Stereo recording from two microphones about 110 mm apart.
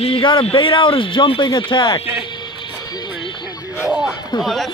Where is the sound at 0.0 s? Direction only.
55° left (ahead or behind).